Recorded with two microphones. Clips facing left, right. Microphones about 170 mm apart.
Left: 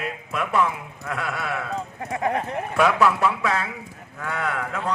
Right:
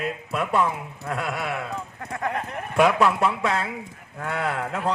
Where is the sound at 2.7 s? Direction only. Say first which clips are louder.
Right 1 dB; 20° right (ahead or behind).